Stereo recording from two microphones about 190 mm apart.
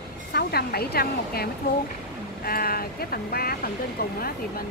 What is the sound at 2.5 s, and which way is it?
Speech, 50° left (ahead or behind).